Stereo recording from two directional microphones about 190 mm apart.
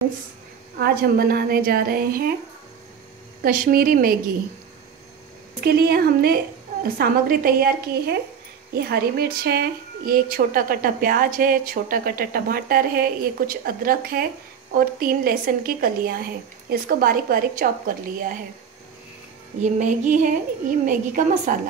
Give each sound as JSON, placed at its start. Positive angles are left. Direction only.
{"t": 0.7, "sound": "a woman's voice", "side_deg": -55}
{"t": 3.4, "sound": "a woman's voice", "side_deg": -45}
{"t": 5.6, "sound": "a woman's voice", "side_deg": -55}
{"t": 19.6, "sound": "a woman's voice", "side_deg": -40}